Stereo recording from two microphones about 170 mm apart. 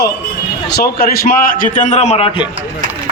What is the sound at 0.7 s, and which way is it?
A man's voice, 65° left (ahead or behind).